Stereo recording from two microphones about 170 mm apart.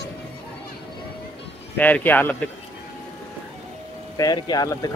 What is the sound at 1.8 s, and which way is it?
Speech, 10° left (ahead or behind).